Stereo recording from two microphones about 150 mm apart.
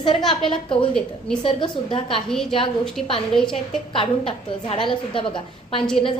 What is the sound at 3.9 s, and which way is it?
A woman's voice, 35° left (ahead or behind).